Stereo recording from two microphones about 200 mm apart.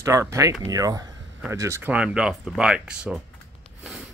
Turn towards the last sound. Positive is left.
turn(degrees=-5)  # may be behind; listen again after turning